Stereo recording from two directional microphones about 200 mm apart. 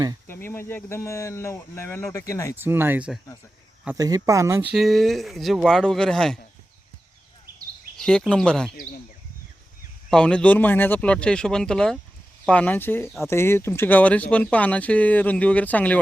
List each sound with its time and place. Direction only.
0.3 s speech: 10° left (ahead or behind)
2.6 s speech: 10° right (ahead or behind)
4.7 s speech: centre (ahead or behind)
7.9 s speech: 5° left (ahead or behind)
10.1 s speech: 5° left (ahead or behind)